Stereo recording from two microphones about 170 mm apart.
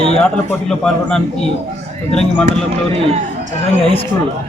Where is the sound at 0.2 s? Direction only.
5° left (ahead or behind).